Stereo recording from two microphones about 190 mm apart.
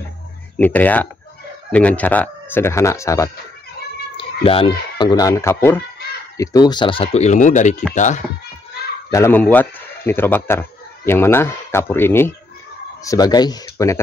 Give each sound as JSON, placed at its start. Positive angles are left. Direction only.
{"t": 0.6, "sound": "speech", "side_deg": 10}
{"t": 4.2, "sound": "speech", "side_deg": 30}
{"t": 9.1, "sound": "speech", "side_deg": 10}